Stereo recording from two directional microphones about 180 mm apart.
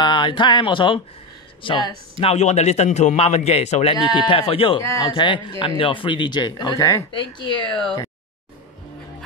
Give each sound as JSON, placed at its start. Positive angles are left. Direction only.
{"t": 0.0, "sound": "speech", "side_deg": 25}